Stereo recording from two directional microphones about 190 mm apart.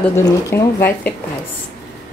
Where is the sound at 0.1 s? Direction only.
15° left (ahead or behind).